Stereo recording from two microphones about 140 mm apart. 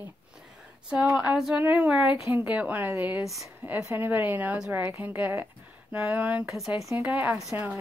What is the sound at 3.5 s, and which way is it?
A woman's voice, 15° right (ahead or behind).